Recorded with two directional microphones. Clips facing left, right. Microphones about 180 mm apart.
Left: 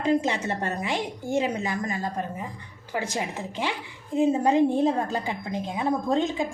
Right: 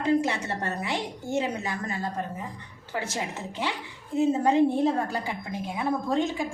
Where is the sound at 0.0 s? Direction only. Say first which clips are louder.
Left 1 dB; 20° left (ahead or behind).